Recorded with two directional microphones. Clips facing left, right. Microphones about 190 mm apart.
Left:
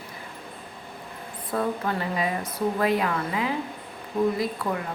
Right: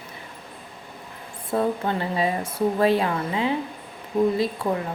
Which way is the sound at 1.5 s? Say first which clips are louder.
Right 3 dB; 25° right (ahead or behind).